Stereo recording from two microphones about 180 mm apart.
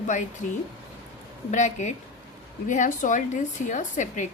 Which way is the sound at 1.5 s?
40° left (ahead or behind).